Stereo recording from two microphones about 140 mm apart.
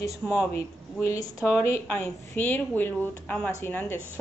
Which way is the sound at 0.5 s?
20° left (ahead or behind).